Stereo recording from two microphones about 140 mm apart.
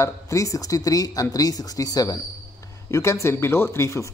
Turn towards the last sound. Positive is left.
turn(degrees=20)  # may be behind; listen again after turning